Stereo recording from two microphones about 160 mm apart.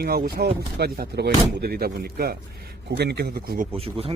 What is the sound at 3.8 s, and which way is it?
Speech, 35° right (ahead or behind).